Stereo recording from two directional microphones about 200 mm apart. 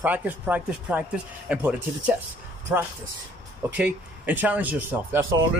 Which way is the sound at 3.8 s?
5° right (ahead or behind).